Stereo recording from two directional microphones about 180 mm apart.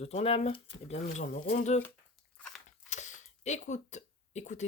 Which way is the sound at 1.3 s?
45° left (ahead or behind).